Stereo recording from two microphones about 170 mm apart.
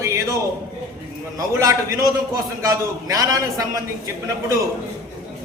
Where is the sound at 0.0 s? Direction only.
15° right (ahead or behind).